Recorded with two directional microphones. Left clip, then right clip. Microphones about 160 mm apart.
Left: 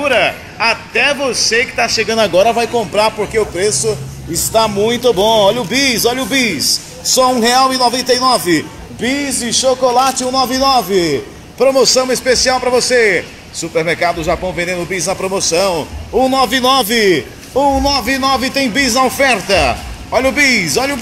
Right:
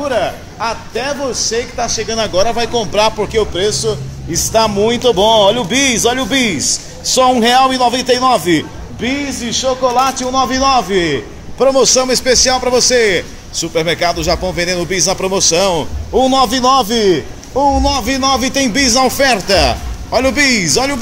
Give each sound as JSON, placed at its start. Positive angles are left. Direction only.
{"t": 0.0, "sound": "a man's voice", "side_deg": 10}
{"t": 2.0, "sound": "speech", "side_deg": 60}
{"t": 2.7, "sound": "speech", "side_deg": -15}
{"t": 3.3, "sound": "a man's voice", "side_deg": 0}
{"t": 14.5, "sound": "a man's voice", "side_deg": -20}
{"t": 16.5, "sound": "a man's voice", "side_deg": 0}
{"t": 16.8, "sound": "a man's voice", "side_deg": 15}
{"t": 17.7, "sound": "speech", "side_deg": 0}